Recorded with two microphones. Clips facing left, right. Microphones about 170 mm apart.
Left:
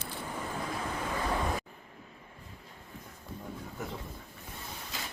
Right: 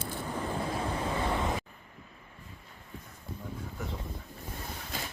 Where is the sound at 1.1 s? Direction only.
25° right (ahead or behind).